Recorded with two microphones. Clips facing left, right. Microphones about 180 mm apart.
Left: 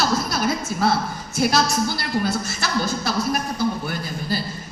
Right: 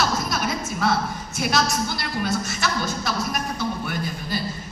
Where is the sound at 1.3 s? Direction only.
30° left (ahead or behind).